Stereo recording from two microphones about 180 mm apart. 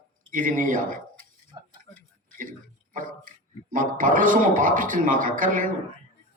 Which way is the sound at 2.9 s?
50° right (ahead or behind).